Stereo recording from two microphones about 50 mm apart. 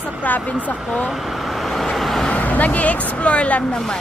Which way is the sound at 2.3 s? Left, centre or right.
Left.